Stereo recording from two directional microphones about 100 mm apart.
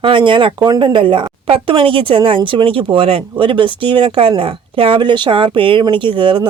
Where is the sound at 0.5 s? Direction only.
40° right (ahead or behind).